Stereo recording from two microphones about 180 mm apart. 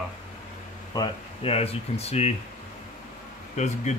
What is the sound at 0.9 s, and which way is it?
Speech, 30° left (ahead or behind).